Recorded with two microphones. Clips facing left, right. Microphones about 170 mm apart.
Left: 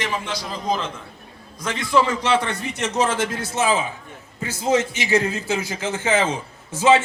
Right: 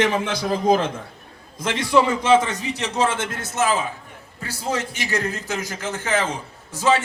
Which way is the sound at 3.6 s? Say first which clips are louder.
Even; 15° left (ahead or behind).